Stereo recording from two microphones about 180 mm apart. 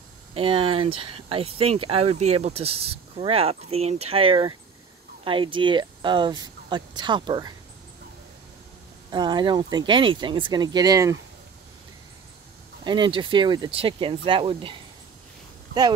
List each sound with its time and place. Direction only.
0.3 s speech: 30° right (ahead or behind)
9.1 s speech: 25° right (ahead or behind)
12.8 s speech: 25° right (ahead or behind)